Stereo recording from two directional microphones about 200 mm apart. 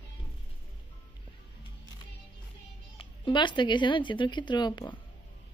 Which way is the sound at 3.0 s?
25° left (ahead or behind).